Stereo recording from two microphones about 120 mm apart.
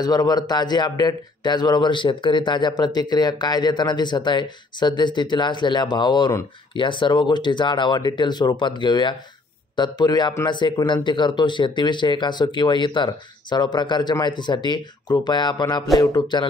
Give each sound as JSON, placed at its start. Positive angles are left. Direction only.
{"t": 0.0, "sound": "a man's voice", "side_deg": 35}